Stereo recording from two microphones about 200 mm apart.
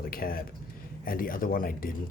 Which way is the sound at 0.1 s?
45° left (ahead or behind).